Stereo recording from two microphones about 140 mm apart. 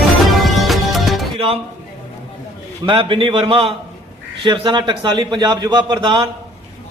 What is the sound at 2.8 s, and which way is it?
A man's voice, 40° right (ahead or behind).